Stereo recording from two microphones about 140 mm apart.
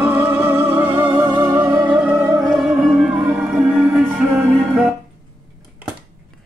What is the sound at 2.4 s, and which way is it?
Music, 5° right (ahead or behind).